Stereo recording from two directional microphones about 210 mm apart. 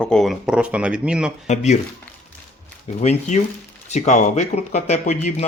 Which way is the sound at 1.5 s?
30° left (ahead or behind).